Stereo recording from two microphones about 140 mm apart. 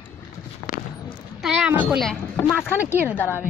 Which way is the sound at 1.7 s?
10° right (ahead or behind).